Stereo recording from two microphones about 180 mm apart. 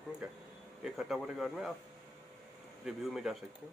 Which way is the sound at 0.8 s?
5° right (ahead or behind).